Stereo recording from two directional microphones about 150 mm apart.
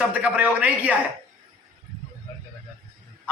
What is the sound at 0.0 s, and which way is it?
Speech, 10° right (ahead or behind).